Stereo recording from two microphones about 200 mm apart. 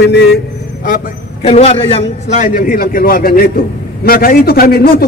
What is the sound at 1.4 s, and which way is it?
A man's voice, 30° left (ahead or behind).